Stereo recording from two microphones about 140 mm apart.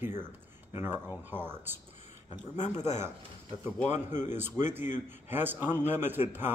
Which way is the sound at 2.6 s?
55° left (ahead or behind).